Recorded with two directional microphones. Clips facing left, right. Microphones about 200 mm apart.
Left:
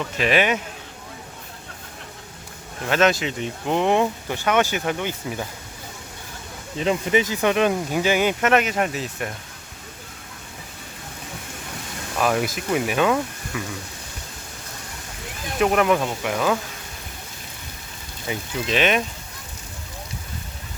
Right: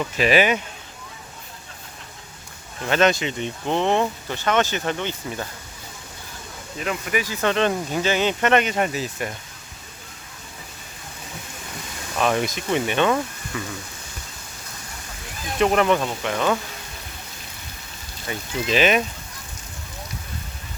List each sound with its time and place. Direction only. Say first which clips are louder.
0.0 s speech: right 2 dB; 5° right (ahead or behind)
2.8 s speech: even; centre (ahead or behind)
6.7 s speech: left 5 dB; 25° left (ahead or behind); by 9.3 s centre (ahead or behind)
12.2 s speech: even; 5° left (ahead or behind)
15.5 s speech: even; 5° left (ahead or behind)
18.3 s speech: left 2 dB; 15° left (ahead or behind)
18.6 s speech: right 2 dB; centre (ahead or behind)